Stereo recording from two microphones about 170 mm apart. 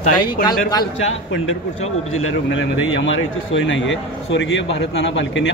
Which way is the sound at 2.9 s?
90° left.